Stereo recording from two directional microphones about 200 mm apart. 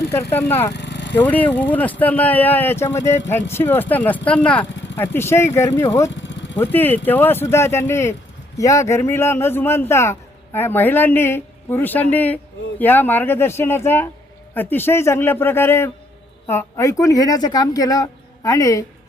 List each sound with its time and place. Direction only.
0.1 s a man's voice: 10° left (ahead or behind)
0.7 s vehicle: 60° left (ahead or behind)
1.1 s a man's voice: 10° left (ahead or behind)